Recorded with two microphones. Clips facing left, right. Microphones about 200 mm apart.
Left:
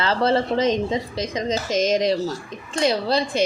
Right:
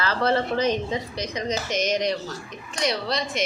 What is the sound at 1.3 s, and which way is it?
Speech, 90° left.